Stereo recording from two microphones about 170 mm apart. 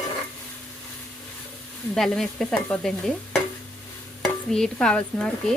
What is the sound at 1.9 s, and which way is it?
Speech, centre (ahead or behind).